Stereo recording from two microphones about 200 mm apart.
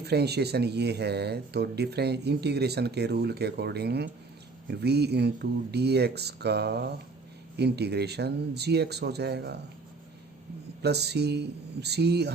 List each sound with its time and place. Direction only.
0.0 s speech: 55° right (ahead or behind)
10.8 s speech: 55° right (ahead or behind)